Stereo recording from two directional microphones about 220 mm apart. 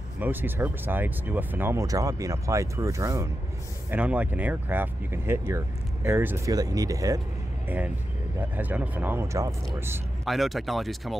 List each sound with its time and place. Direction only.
0.2 s speech: 10° right (ahead or behind)
10.2 s speech: centre (ahead or behind)